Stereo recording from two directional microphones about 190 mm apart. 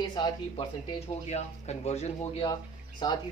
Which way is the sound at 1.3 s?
35° left (ahead or behind).